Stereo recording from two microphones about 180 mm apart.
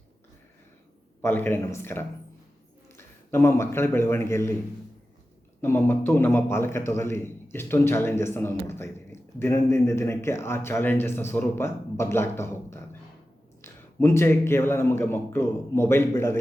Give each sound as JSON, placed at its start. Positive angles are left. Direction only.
{"t": 1.2, "sound": "a man's voice", "side_deg": 10}
{"t": 5.6, "sound": "a man's voice", "side_deg": 10}